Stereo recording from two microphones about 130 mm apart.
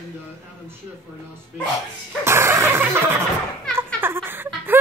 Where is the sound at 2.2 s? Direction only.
20° right (ahead or behind).